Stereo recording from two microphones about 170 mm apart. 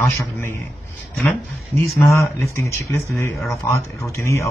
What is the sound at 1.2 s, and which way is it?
Speech, 15° left (ahead or behind).